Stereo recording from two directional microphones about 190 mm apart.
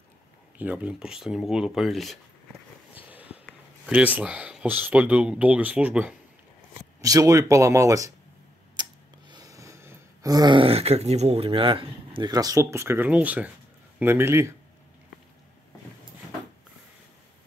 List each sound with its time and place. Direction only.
0.6 s speech: 10° right (ahead or behind)
3.1 s a sound: 10° right (ahead or behind)
3.8 s speech: 5° right (ahead or behind)
7.0 s speech: 15° right (ahead or behind)
8.8 s a sound: 20° right (ahead or behind)
9.3 s speech: 20° right (ahead or behind)